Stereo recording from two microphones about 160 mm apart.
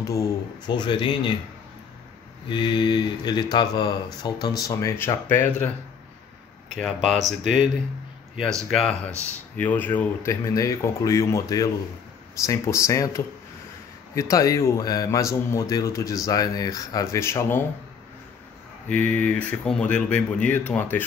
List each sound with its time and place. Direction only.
0.0 s speech: 20° left (ahead or behind)
2.4 s speech: 30° left (ahead or behind); by 5.5 s 15° left (ahead or behind)
6.8 s speech: centre (ahead or behind)
7.2 s speech: 50° right (ahead or behind)
8.6 s speech: centre (ahead or behind)
18.9 s speech: 10° left (ahead or behind)